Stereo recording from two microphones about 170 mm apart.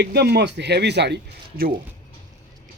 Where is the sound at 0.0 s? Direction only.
75° right (ahead or behind).